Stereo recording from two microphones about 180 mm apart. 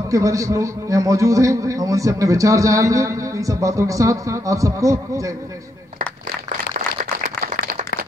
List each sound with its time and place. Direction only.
0.1 s a man's voice: 20° right (ahead or behind)